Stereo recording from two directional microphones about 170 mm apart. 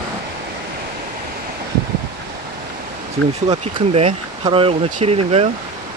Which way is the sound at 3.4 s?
35° right (ahead or behind).